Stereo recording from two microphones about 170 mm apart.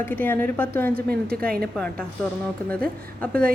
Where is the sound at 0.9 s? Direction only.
65° right (ahead or behind).